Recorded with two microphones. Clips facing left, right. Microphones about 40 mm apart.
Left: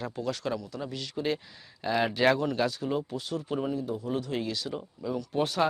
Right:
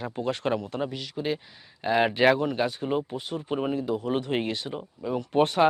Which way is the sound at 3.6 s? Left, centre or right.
Right.